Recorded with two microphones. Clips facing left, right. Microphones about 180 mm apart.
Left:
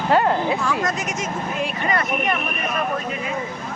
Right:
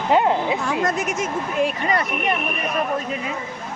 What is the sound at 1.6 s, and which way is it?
Speech, 30° right (ahead or behind).